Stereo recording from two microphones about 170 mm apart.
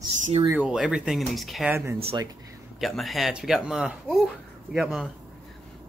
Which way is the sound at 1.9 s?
35° right (ahead or behind).